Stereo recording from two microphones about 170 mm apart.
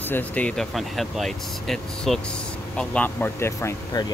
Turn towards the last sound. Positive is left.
turn(degrees=15)  # may be behind; listen again after turning